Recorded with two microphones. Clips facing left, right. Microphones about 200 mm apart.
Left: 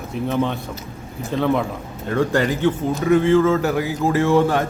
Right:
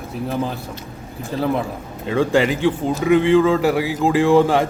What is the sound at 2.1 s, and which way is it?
A man's voice, 10° right (ahead or behind).